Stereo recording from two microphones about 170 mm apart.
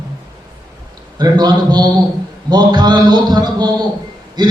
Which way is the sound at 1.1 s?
25° right (ahead or behind).